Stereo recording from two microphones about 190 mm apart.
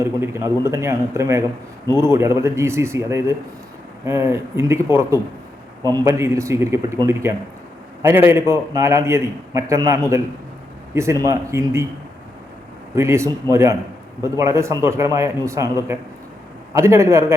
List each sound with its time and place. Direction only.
0.0 s a man's voice: 15° right (ahead or behind)
13.0 s a man's voice: 15° right (ahead or behind)